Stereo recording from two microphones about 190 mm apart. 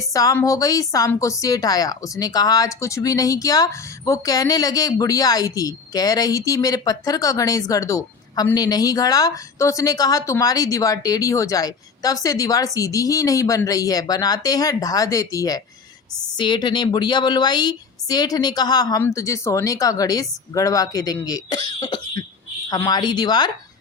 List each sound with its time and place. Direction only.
0.0 s a woman's voice: 20° left (ahead or behind)